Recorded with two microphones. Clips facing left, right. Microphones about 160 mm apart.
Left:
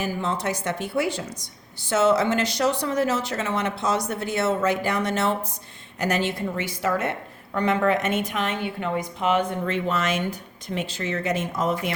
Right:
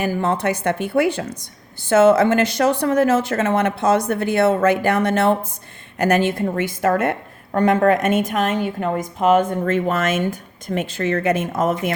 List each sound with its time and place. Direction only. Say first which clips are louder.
0.0 s a woman's voice: right 6 dB; 55° right (ahead or behind)